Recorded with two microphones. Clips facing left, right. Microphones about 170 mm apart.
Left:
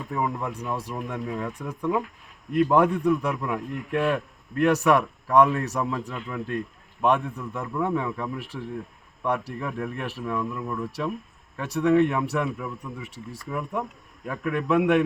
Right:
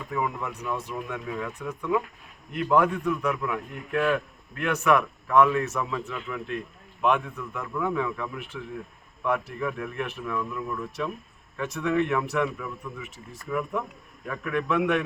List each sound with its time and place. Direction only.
0.1 s a man's voice: 35° left (ahead or behind)